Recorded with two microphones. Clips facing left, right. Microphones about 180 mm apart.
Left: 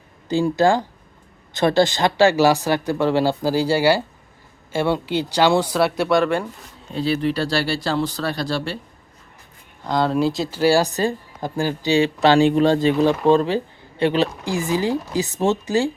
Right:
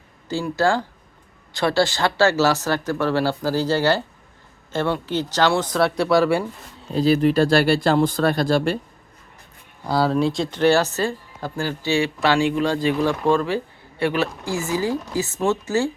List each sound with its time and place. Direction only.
0.3 s speech: 20° left (ahead or behind); by 6.4 s 5° right (ahead or behind)
6.9 s speech: 40° right (ahead or behind)
9.8 s speech: 5° right (ahead or behind); by 15.9 s 15° left (ahead or behind)